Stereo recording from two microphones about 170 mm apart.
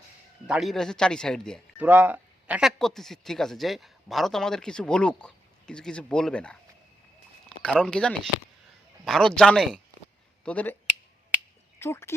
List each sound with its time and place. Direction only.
0.4 s speech: 5° right (ahead or behind)
1.8 s speech: 10° right (ahead or behind); by 6.6 s 5° left (ahead or behind)
7.6 s speech: 5° left (ahead or behind)
11.8 s speech: 15° left (ahead or behind)